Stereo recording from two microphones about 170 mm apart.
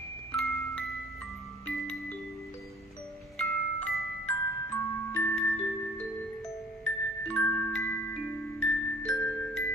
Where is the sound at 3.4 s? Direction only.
Centre (ahead or behind).